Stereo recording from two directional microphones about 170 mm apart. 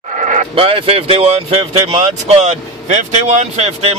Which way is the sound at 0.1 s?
45° right (ahead or behind).